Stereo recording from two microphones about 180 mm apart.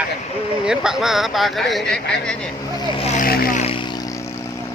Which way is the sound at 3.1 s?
55° left (ahead or behind).